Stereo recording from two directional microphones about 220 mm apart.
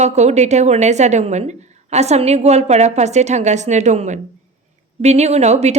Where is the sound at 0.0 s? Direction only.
30° right (ahead or behind).